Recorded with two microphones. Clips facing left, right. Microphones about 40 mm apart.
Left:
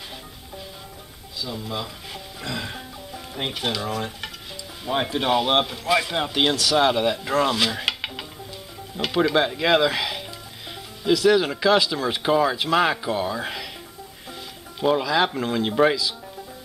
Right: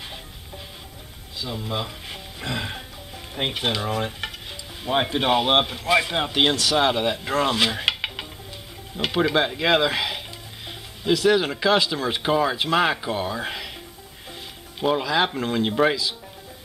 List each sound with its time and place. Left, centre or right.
1.4 s speech: centre
14.8 s speech: centre